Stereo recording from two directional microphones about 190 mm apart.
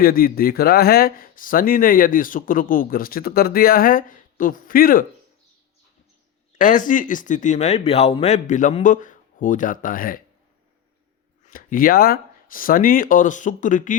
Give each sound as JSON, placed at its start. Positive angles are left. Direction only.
{"t": 0.0, "sound": "speech", "side_deg": 50}
{"t": 6.6, "sound": "speech", "side_deg": 45}
{"t": 11.4, "sound": "speech", "side_deg": 50}